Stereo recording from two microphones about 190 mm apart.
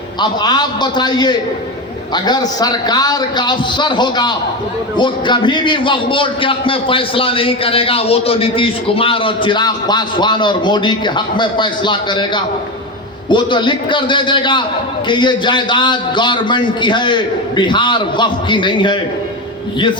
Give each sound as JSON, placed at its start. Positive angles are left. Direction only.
{"t": 0.2, "sound": "a man's voice", "side_deg": 20}